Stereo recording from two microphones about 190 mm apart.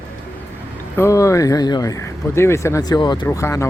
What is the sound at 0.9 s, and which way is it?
Speech, 15° left (ahead or behind).